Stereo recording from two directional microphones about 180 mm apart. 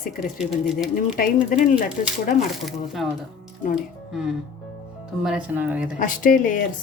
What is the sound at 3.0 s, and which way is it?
Speech, centre (ahead or behind).